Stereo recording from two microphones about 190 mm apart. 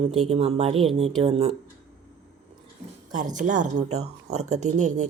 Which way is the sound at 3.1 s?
40° right (ahead or behind).